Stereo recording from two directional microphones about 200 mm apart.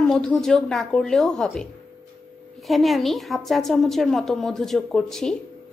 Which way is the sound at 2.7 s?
Centre (ahead or behind).